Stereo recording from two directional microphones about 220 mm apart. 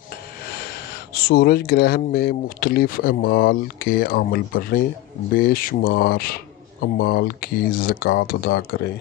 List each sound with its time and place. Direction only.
1.1 s speech: 45° left (ahead or behind)